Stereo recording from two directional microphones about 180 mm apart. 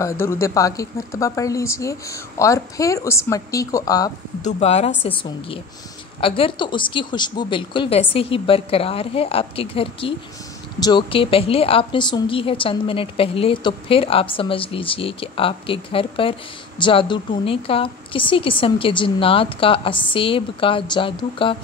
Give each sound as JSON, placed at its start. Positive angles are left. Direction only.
{"t": 0.0, "sound": "speech", "side_deg": 15}
{"t": 4.4, "sound": "a woman's voice", "side_deg": 40}